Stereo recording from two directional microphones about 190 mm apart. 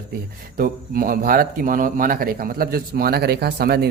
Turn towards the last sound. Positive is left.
turn(degrees=-55)  # may be behind; listen again after turning